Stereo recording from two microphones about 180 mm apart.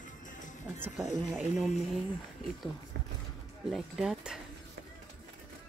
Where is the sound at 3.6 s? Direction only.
Centre (ahead or behind).